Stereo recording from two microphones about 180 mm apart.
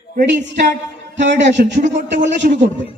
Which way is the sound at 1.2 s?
80° right.